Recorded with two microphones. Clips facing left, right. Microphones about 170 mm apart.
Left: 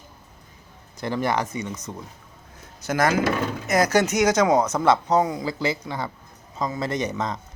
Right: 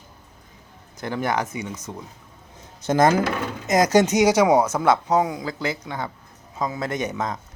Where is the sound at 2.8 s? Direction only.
25° right (ahead or behind).